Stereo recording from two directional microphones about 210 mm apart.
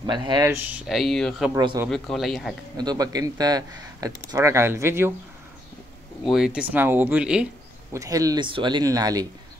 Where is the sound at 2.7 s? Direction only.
20° right (ahead or behind).